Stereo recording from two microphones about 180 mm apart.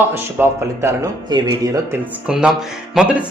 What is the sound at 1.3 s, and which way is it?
Speech, 20° right (ahead or behind).